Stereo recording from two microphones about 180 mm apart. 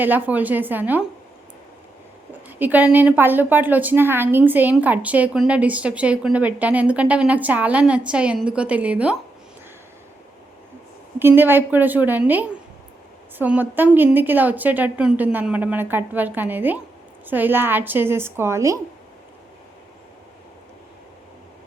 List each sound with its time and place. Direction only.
0.0 s a woman's voice: 10° right (ahead or behind)
2.5 s a woman's voice: 10° right (ahead or behind)
11.2 s a woman's voice: 10° right (ahead or behind)